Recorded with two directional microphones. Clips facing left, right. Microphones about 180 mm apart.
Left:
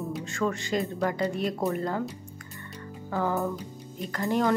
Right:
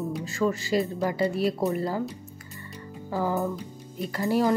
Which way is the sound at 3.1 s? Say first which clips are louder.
Right 1 dB; 10° right (ahead or behind).